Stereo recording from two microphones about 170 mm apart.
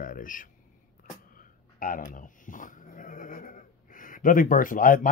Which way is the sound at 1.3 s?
55° left (ahead or behind).